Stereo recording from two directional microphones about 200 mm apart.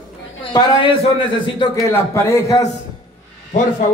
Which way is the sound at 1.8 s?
15° left (ahead or behind).